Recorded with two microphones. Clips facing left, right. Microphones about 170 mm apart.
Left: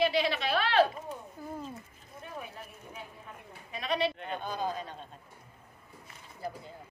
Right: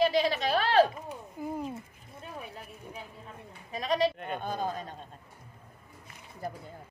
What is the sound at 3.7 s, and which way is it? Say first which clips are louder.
Bleat: right 3 dB; 40° right (ahead or behind).